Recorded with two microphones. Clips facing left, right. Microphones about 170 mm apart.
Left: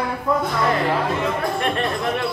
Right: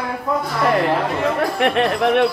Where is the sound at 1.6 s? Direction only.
70° right (ahead or behind).